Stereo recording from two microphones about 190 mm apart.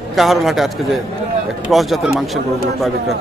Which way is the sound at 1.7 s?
Centre (ahead or behind).